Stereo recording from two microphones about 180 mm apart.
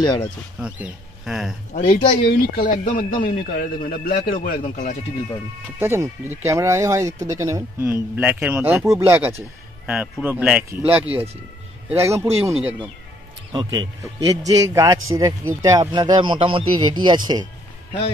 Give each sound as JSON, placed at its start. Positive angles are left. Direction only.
{"t": 0.0, "sound": "speech", "side_deg": 25}
{"t": 0.6, "sound": "speech", "side_deg": -5}
{"t": 1.7, "sound": "speech", "side_deg": 45}
{"t": 2.2, "sound": "speech", "side_deg": 55}
{"t": 5.8, "sound": "speech", "side_deg": -15}
{"t": 8.2, "sound": "a man's voice", "side_deg": -5}
{"t": 13.5, "sound": "speech", "side_deg": -20}